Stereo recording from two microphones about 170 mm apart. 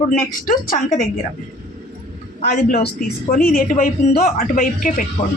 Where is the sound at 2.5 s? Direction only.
60° left (ahead or behind).